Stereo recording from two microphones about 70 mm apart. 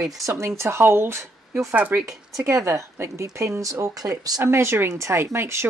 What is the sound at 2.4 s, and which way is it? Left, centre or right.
Speech, right.